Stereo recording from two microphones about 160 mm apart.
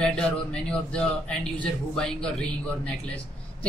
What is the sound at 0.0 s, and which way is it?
Speech, 5° left (ahead or behind).